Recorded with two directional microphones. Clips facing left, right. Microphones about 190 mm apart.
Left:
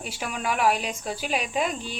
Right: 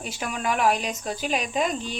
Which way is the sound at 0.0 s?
5° left (ahead or behind).